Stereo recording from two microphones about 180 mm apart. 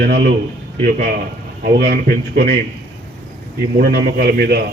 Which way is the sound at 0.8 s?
55° right (ahead or behind).